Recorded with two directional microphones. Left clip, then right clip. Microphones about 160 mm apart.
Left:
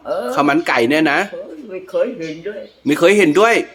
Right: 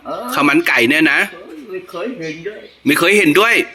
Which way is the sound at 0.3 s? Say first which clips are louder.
Right 3 dB; 10° left (ahead or behind).